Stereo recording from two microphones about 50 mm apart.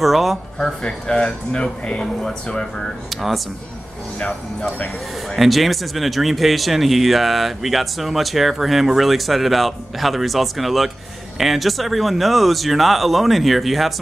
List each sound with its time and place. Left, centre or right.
0.0 s speech: centre
0.8 s speech: centre
3.1 s speech: centre
4.2 s speech: centre
5.3 s speech: centre